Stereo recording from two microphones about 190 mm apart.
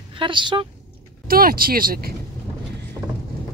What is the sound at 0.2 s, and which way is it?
Speech, 25° right (ahead or behind).